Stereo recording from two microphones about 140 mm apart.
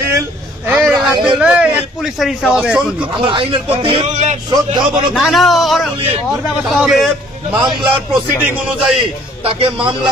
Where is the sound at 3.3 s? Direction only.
35° right (ahead or behind).